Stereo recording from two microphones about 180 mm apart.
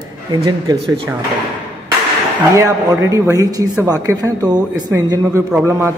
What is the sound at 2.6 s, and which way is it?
A man's voice, 15° right (ahead or behind).